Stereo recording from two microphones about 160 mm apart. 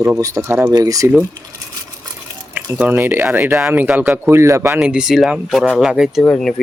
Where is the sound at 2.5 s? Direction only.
10° right (ahead or behind).